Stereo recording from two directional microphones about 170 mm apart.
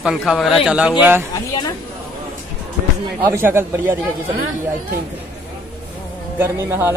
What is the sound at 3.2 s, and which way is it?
Speech, 15° right (ahead or behind).